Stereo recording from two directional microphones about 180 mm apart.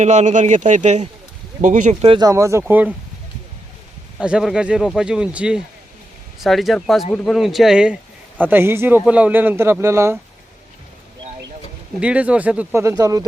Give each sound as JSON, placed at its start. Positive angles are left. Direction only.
{"t": 0.0, "sound": "speech", "side_deg": -40}
{"t": 2.2, "sound": "a man's voice", "side_deg": -15}
{"t": 4.2, "sound": "a man's voice", "side_deg": -5}
{"t": 11.9, "sound": "a man's voice", "side_deg": -5}